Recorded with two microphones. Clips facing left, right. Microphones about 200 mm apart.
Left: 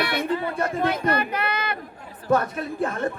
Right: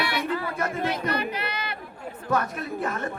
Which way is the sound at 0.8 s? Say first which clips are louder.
Left 5 dB; 50° left (ahead or behind).